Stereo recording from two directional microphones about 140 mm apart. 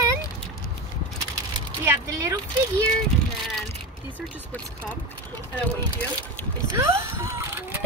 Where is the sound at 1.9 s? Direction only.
20° right (ahead or behind).